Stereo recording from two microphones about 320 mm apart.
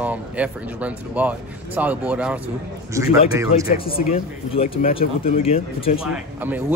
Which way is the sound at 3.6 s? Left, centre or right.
Left.